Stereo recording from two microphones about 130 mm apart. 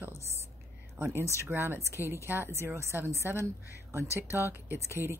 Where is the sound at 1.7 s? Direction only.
20° left (ahead or behind).